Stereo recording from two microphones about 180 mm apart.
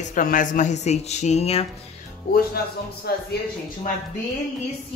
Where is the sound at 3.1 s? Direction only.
65° left (ahead or behind).